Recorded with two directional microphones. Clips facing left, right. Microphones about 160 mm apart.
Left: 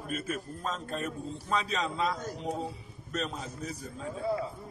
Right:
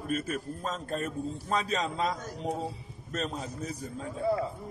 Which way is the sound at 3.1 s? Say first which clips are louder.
Right 1 dB; 40° right (ahead or behind).